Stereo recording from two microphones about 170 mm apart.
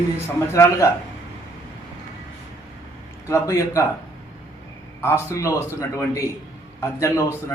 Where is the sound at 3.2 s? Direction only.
20° left (ahead or behind).